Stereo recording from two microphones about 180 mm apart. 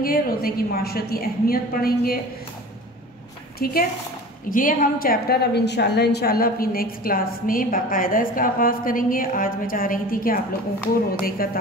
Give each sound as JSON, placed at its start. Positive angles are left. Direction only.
{"t": 0.0, "sound": "a woman's voice", "side_deg": 55}
{"t": 3.5, "sound": "a woman's voice", "side_deg": 55}